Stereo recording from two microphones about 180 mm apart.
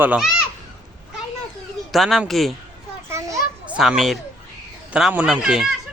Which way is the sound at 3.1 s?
15° right (ahead or behind).